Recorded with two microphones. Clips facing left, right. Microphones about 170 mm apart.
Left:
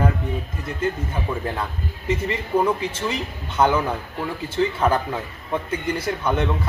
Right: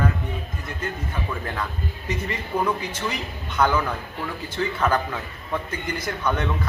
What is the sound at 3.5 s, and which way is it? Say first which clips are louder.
A man's voice: left 3 dB; 25° left (ahead or behind).